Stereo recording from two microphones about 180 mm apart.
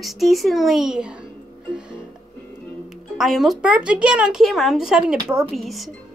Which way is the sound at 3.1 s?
Centre (ahead or behind).